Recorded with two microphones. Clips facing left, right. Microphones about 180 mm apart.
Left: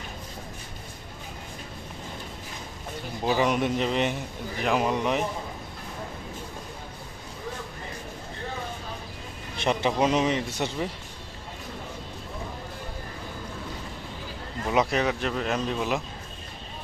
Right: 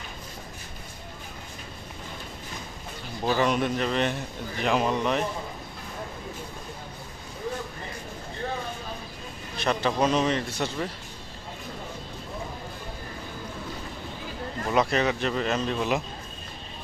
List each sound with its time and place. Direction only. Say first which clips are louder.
3.2 s a man's voice: even; 15° left (ahead or behind)
9.6 s a man's voice: left 1 dB; 20° left (ahead or behind)
14.7 s speech: even; 5° left (ahead or behind)